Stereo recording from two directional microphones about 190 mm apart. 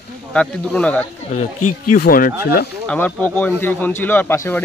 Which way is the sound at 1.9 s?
50° left (ahead or behind).